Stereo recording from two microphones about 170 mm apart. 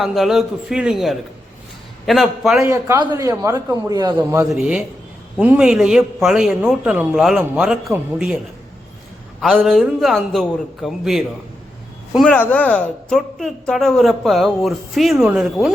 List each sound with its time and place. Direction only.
0.0 s a woman's voice: centre (ahead or behind)
2.6 s a man's voice: 15° right (ahead or behind)
4.5 s a woman's voice: 5° right (ahead or behind)
9.4 s a woman's voice: centre (ahead or behind)